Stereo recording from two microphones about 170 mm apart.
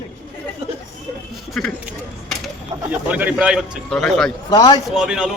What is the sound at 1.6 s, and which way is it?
Speech, centre (ahead or behind).